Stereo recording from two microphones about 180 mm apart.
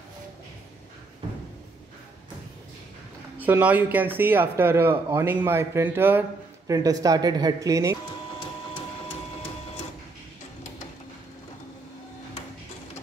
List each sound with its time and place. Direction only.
3.3 s speech: 10° right (ahead or behind)